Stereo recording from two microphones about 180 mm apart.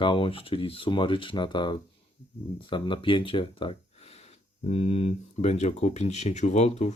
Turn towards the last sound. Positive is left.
turn(degrees=40)  # may be behind; listen again after turning